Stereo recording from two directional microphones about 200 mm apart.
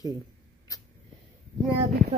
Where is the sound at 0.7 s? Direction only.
20° left (ahead or behind).